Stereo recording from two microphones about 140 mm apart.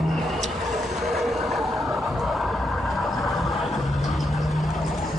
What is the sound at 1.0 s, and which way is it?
Vehicle, centre (ahead or behind).